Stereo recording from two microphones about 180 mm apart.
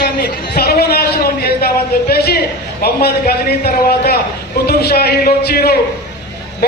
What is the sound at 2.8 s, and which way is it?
A man's voice, 60° left (ahead or behind).